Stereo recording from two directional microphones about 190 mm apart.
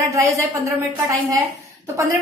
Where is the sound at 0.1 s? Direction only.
15° right (ahead or behind).